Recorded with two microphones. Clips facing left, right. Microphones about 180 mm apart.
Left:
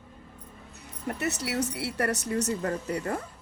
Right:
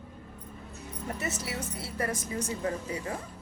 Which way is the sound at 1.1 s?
70° left (ahead or behind).